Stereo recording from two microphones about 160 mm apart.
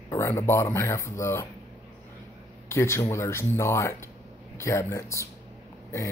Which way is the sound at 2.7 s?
15° left (ahead or behind).